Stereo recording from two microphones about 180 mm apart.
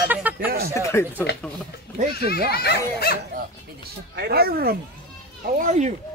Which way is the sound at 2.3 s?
60° left (ahead or behind).